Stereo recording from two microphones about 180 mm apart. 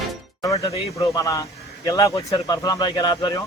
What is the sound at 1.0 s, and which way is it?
A man's voice, 20° left (ahead or behind).